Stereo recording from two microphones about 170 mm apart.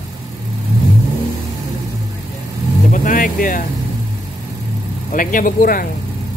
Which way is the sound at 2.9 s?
50° left (ahead or behind).